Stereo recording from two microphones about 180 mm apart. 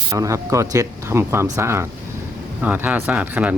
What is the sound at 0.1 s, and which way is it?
Speech, 15° right (ahead or behind).